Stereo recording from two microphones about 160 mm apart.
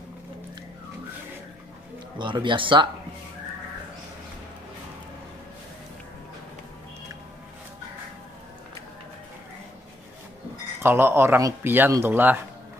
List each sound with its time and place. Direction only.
2.1 s speech: 30° right (ahead or behind)
10.8 s speech: 15° right (ahead or behind)